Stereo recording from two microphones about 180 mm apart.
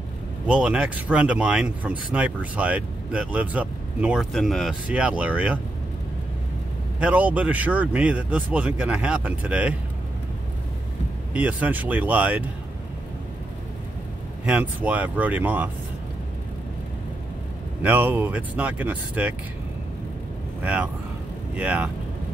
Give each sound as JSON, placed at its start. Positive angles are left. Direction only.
{"t": 0.5, "sound": "speech", "side_deg": -5}
{"t": 7.0, "sound": "speech", "side_deg": -5}
{"t": 11.3, "sound": "speech", "side_deg": -10}
{"t": 14.4, "sound": "speech", "side_deg": -10}
{"t": 17.8, "sound": "speech", "side_deg": -10}
{"t": 20.6, "sound": "speech", "side_deg": -5}